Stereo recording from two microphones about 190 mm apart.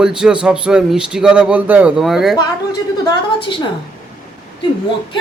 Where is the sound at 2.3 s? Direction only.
20° left (ahead or behind).